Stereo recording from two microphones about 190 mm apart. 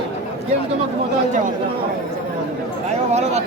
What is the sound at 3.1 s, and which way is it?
Speech, 35° right (ahead or behind).